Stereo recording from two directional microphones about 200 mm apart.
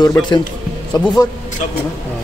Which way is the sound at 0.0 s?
20° left (ahead or behind).